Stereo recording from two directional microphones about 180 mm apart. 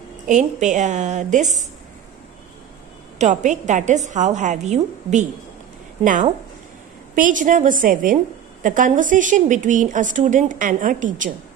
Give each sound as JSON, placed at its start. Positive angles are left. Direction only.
{"t": 0.3, "sound": "a woman's voice", "side_deg": -40}
{"t": 3.2, "sound": "a woman's voice", "side_deg": -40}